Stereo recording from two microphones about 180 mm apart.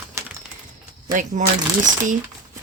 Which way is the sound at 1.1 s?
45° right (ahead or behind).